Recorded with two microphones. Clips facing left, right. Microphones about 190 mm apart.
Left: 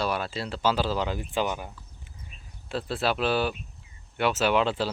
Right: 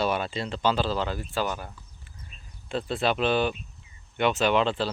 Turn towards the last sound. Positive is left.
turn(degrees=10)  # may be behind; listen again after turning